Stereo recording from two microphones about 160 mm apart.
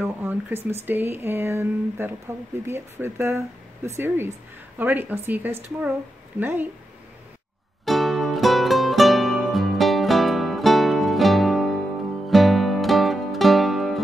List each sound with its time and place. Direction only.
0.0 s speech: 15° right (ahead or behind)
7.8 s music: centre (ahead or behind)